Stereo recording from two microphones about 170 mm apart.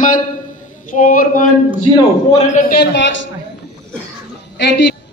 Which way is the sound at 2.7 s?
80° left.